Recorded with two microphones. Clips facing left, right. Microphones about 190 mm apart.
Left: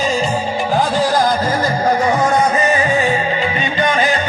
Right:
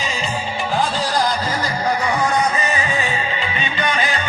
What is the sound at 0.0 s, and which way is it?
Music, 45° left (ahead or behind).